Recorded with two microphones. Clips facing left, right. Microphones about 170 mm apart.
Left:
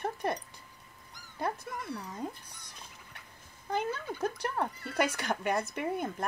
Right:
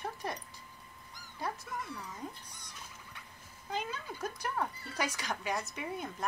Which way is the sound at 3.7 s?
55° left (ahead or behind).